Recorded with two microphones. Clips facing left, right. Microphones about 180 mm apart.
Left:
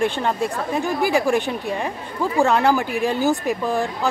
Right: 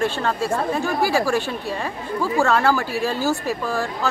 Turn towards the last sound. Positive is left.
turn(degrees=20)  # may be behind; listen again after turning